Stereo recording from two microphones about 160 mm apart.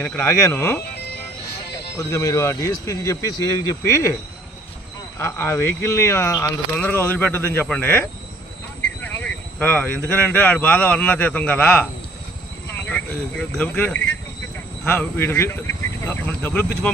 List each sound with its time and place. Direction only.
0.0 s speech: 15° left (ahead or behind)
5.2 s speech: 15° left (ahead or behind)